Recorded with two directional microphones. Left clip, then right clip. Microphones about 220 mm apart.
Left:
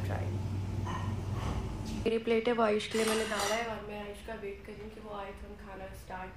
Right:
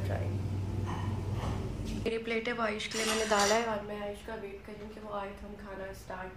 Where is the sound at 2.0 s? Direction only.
10° left (ahead or behind).